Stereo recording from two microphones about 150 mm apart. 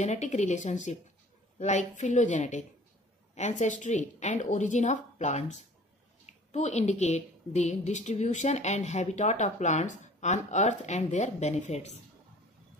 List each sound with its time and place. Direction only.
0.0 s a woman's voice: 50° left (ahead or behind)